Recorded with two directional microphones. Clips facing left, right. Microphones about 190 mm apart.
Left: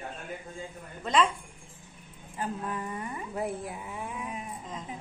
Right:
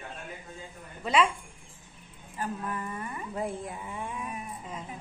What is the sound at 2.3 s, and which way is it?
Speech, 15° left (ahead or behind).